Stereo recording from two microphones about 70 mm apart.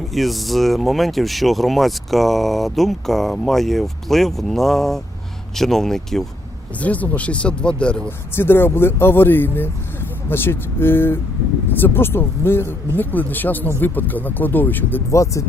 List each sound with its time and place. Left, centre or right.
0.1 s speech: centre
6.8 s speech: left
8.4 s speech: left
15.1 s speech: left